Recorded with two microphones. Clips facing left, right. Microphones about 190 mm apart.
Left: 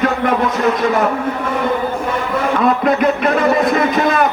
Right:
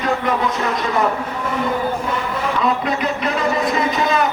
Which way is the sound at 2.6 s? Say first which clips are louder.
Left 6 dB; 55° left (ahead or behind).